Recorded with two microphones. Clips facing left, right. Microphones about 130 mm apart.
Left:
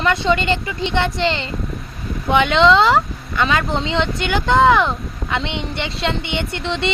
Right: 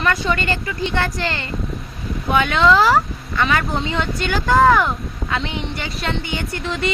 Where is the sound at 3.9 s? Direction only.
20° left (ahead or behind).